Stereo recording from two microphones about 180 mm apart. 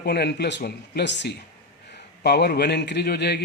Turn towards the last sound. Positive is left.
turn(degrees=65)  # may be behind; listen again after turning